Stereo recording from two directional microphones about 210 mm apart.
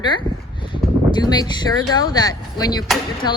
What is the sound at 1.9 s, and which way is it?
Speech, 20° left (ahead or behind).